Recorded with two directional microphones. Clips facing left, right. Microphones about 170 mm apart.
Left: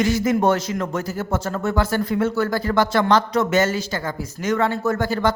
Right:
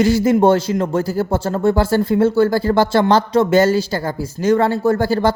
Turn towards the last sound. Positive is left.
turn(degrees=-30)  # may be behind; listen again after turning